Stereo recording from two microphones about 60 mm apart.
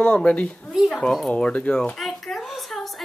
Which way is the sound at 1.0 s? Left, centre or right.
Centre.